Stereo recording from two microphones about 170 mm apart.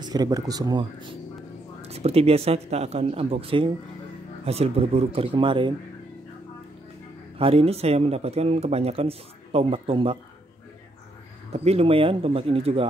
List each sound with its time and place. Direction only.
0.0 s speech: 20° right (ahead or behind)
1.8 s speech: 40° right (ahead or behind)
7.3 s speech: 35° right (ahead or behind)
11.5 s speech: 35° right (ahead or behind)